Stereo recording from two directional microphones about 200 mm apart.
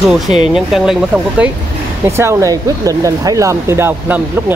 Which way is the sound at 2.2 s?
15° right (ahead or behind).